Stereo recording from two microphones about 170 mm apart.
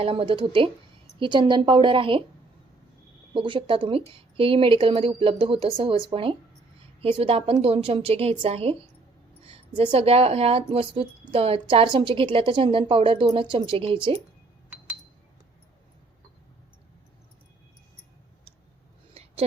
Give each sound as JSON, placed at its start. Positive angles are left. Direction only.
{"t": 0.0, "sound": "a woman's voice", "side_deg": -35}
{"t": 3.3, "sound": "a woman's voice", "side_deg": -30}
{"t": 19.1, "sound": "a sound", "side_deg": -35}